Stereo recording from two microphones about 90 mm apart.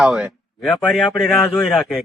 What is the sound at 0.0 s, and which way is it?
Speech, 5° right (ahead or behind).